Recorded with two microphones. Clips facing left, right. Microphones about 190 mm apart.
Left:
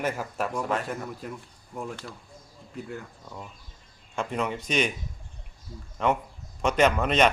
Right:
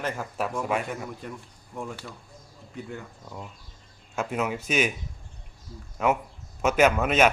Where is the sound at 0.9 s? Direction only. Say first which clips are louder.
Left 1 dB; centre (ahead or behind).